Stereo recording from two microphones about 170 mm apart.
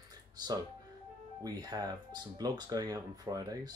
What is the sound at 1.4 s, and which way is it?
Speech, 20° right (ahead or behind).